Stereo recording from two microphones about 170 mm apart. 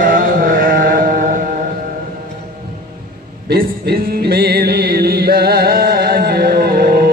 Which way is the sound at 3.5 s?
70° right (ahead or behind).